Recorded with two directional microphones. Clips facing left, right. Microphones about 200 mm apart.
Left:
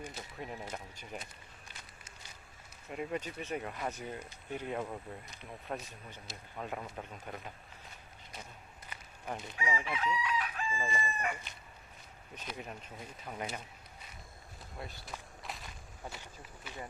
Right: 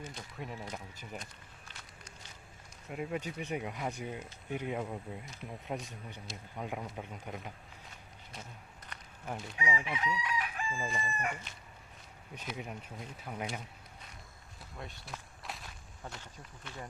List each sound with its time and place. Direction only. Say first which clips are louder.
0.0 s speech: even; 5° left (ahead or behind)
1.1 s a sound: left 2 dB; 5° left (ahead or behind)
2.9 s speech: right 1 dB; 5° right (ahead or behind)
5.9 s speech: right 3 dB; 15° right (ahead or behind)
8.9 s a sound: even; 5° left (ahead or behind)
9.2 s speech: even; centre (ahead or behind)
9.6 s speech: even; 15° right (ahead or behind)
10.7 s speech: left 1 dB; centre (ahead or behind)
12.5 s speech: right 2 dB; 10° right (ahead or behind)
14.8 s walk: even; centre (ahead or behind)
16.0 s speech: even; 5° left (ahead or behind)